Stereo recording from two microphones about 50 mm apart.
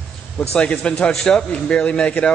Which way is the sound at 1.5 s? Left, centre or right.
Left.